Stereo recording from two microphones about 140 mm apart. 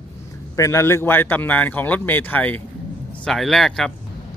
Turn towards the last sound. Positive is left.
turn(degrees=5)  # may be behind; listen again after turning